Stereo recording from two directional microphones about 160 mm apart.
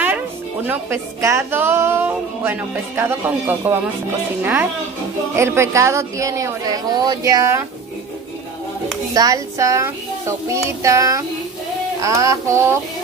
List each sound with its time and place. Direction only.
0.7 s speech: 15° right (ahead or behind)
9.1 s speech: 20° right (ahead or behind)